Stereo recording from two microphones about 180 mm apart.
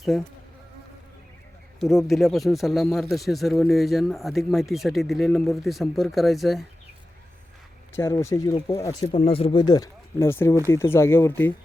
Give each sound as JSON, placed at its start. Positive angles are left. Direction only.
{"t": 1.8, "sound": "a man's voice", "side_deg": 0}
{"t": 7.9, "sound": "speech", "side_deg": 15}